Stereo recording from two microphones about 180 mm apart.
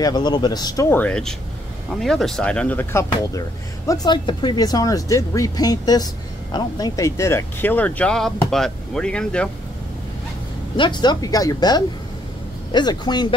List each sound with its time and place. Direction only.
0.0 s speech: 25° left (ahead or behind); by 9.5 s 5° left (ahead or behind)
10.8 s speech: 25° left (ahead or behind)